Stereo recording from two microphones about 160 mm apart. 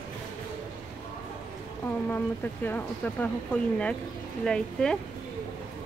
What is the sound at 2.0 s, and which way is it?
Speech, 10° left (ahead or behind).